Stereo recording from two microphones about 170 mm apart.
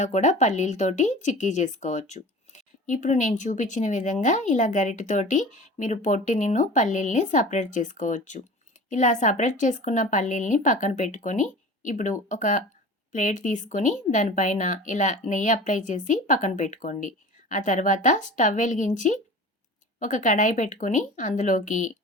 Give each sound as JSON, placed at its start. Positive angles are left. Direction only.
{"t": 0.0, "sound": "a woman's voice", "side_deg": 45}